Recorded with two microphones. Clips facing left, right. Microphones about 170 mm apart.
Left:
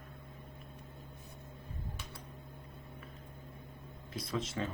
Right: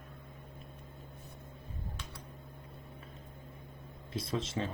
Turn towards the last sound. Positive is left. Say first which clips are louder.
# right 2 dB
turn(degrees=-25)  # may be behind; listen again after turning